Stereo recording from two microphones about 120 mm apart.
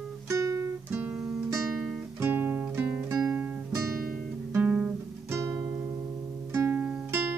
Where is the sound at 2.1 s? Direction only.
20° right (ahead or behind).